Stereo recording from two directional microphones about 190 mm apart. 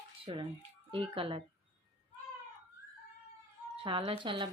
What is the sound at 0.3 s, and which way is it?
Speech, 30° right (ahead or behind).